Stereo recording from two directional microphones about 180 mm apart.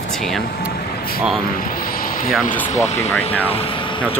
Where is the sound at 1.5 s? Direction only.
50° left (ahead or behind).